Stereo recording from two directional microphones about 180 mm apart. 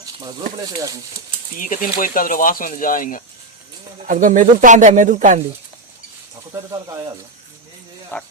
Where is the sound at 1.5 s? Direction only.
50° left (ahead or behind).